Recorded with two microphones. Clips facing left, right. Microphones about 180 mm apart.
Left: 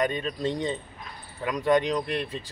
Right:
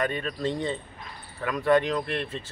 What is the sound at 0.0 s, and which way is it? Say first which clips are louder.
Speech: left 1 dB; 20° left (ahead or behind).